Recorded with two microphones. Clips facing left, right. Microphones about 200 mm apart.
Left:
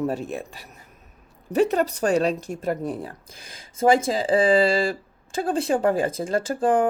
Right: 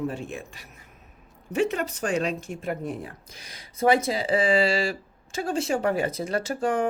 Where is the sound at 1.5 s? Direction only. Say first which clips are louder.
Left 5 dB; 35° left (ahead or behind).